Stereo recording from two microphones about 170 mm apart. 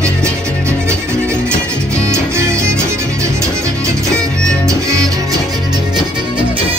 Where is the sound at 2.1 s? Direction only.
15° right (ahead or behind).